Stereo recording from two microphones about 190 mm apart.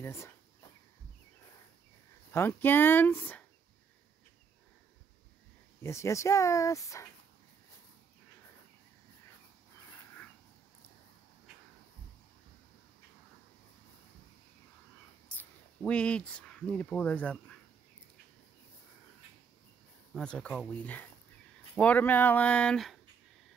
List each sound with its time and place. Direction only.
0.0 s a sound: 15° left (ahead or behind)
2.3 s speech: 10° left (ahead or behind)
5.8 s speech: 15° left (ahead or behind)
15.2 s speech: 5° left (ahead or behind)
20.2 s speech: 5° left (ahead or behind)